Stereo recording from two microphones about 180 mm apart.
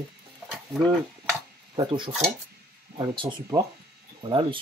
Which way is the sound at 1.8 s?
25° right (ahead or behind).